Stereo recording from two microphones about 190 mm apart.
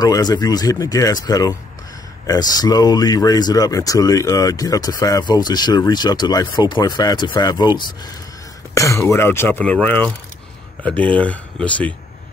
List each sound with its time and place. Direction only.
0.0 s speech: 20° left (ahead or behind)